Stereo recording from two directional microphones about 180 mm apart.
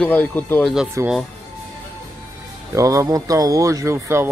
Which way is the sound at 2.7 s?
15° right (ahead or behind).